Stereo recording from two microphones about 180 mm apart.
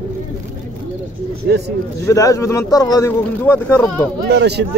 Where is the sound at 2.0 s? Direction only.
15° left (ahead or behind).